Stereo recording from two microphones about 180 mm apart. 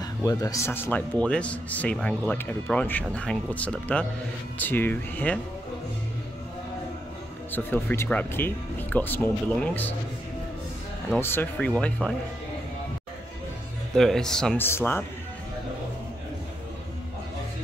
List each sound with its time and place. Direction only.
0.0 s speech: 20° left (ahead or behind)
7.5 s speech: 15° left (ahead or behind)
11.1 s speech: 10° left (ahead or behind)
13.9 s speech: 5° left (ahead or behind)